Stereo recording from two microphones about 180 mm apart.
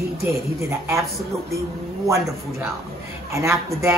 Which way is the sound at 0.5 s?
15° right (ahead or behind).